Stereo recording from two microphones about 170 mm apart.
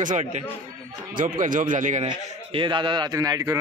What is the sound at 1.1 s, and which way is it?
Speech, 55° right (ahead or behind).